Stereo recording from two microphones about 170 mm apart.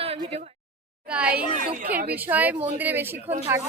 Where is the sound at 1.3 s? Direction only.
50° right (ahead or behind).